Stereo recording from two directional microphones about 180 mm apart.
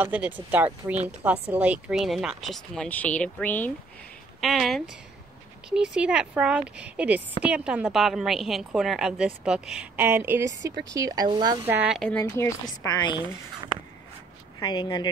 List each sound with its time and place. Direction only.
0.0 s a woman's voice: 10° right (ahead or behind)
11.6 s speech: 10° right (ahead or behind)
12.0 s a woman's voice: 10° left (ahead or behind)
14.6 s a woman's voice: 25° left (ahead or behind)